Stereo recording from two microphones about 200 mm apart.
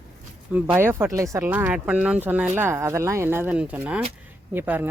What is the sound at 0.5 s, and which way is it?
Speech, 10° right (ahead or behind).